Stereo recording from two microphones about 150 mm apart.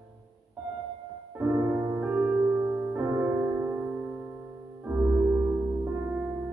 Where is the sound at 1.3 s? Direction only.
10° right (ahead or behind).